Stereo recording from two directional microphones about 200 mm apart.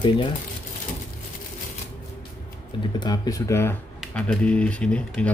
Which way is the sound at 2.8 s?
20° left (ahead or behind).